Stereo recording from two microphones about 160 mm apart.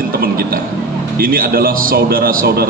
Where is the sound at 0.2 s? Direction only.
65° right (ahead or behind).